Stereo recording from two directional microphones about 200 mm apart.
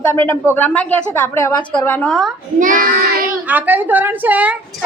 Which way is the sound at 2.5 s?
40° right (ahead or behind).